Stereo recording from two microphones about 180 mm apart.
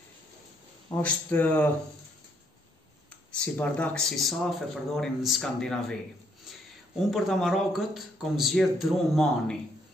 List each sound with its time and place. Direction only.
0.8 s speech: 10° left (ahead or behind)
3.3 s speech: 5° left (ahead or behind)
7.0 s speech: centre (ahead or behind)